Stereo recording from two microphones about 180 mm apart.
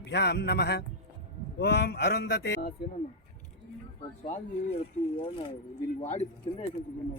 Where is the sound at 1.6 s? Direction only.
65° left (ahead or behind).